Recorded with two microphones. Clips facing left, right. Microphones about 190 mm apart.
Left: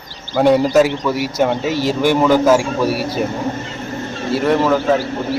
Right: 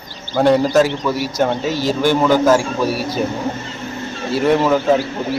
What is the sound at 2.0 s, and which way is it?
Speech, 5° left (ahead or behind).